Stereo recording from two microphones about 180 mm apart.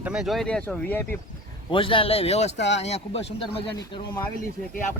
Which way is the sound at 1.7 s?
30° left (ahead or behind).